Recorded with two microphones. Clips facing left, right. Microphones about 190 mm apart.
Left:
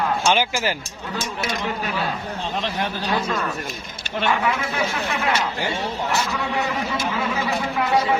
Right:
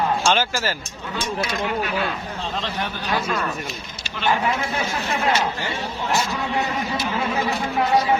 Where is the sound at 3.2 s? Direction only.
5° right (ahead or behind).